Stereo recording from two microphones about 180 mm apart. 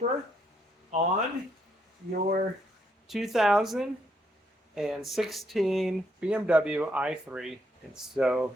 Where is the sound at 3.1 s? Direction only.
Centre (ahead or behind).